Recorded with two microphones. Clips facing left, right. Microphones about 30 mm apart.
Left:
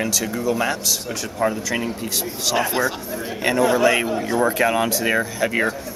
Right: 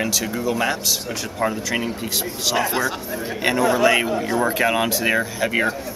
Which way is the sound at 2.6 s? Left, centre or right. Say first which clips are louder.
Left 1 dB; centre.